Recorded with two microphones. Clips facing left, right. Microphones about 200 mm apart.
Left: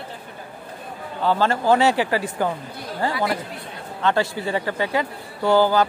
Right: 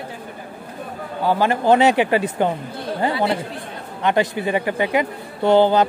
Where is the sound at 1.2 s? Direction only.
15° right (ahead or behind).